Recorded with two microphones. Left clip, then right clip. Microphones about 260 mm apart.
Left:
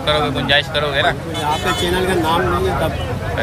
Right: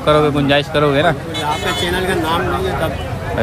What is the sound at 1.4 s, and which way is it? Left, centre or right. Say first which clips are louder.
Speech: even; centre.